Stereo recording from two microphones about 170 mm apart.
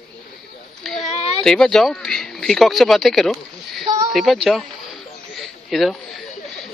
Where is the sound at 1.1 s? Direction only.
40° left (ahead or behind).